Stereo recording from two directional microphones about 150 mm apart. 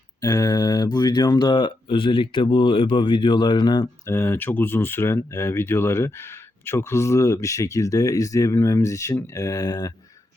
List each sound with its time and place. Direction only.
0.2 s speech: 20° left (ahead or behind)
4.0 s speech: 15° left (ahead or behind)